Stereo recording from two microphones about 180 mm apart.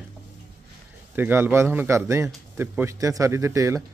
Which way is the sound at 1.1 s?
10° right (ahead or behind).